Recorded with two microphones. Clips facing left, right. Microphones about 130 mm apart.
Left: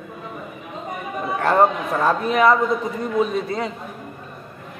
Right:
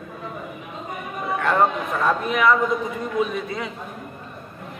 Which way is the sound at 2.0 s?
35° left (ahead or behind).